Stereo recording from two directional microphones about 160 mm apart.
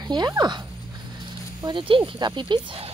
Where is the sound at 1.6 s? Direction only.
30° right (ahead or behind).